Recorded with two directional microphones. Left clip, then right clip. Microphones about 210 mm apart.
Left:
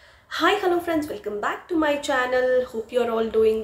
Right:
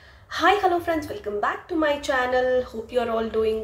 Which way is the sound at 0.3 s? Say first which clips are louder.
Right 1 dB; 5° left (ahead or behind).